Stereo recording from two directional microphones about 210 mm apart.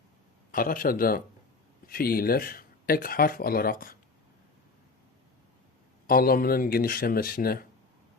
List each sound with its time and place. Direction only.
0.5 s speech: 40° left (ahead or behind)
6.1 s speech: 45° left (ahead or behind)